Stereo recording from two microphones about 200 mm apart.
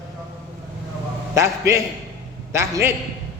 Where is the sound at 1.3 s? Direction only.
15° right (ahead or behind).